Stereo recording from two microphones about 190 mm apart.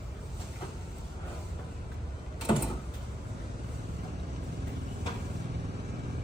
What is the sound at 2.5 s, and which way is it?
Vehicle, 25° left (ahead or behind).